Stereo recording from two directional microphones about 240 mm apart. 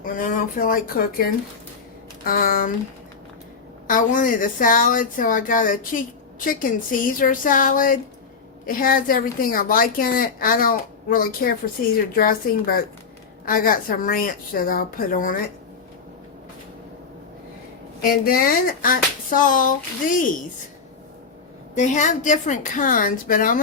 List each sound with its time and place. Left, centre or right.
0.0 s a woman's voice: left
2.2 s a woman's voice: left
3.8 s a woman's voice: left
18.0 s a woman's voice: left
21.8 s a woman's voice: left